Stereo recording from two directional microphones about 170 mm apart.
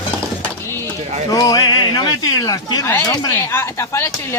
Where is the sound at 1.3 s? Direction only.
20° left (ahead or behind).